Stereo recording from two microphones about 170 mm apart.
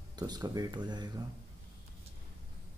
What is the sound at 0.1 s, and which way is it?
Speech, 25° right (ahead or behind).